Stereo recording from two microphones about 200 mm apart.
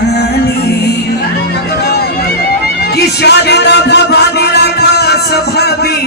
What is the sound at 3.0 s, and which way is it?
Music, 55° left (ahead or behind).